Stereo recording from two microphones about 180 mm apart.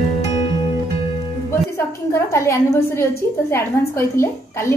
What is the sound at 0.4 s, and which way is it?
Music, 30° left (ahead or behind).